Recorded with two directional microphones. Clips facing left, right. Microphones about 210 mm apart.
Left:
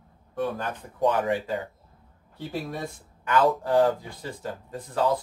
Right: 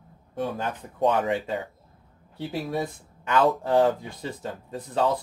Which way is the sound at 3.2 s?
25° right (ahead or behind).